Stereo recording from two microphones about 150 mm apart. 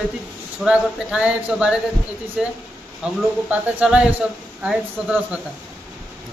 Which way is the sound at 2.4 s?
5° right (ahead or behind).